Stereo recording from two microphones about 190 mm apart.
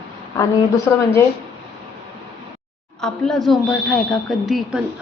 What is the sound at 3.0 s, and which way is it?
Speech, 5° left (ahead or behind).